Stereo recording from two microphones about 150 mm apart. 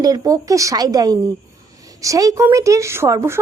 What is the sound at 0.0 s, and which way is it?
A woman's voice, 25° right (ahead or behind).